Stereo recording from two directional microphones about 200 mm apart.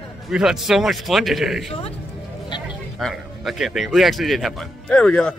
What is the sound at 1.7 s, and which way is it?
Speech, 30° left (ahead or behind).